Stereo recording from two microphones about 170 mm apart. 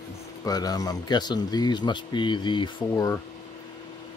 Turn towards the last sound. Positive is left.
turn(degrees=25)  # may be behind; listen again after turning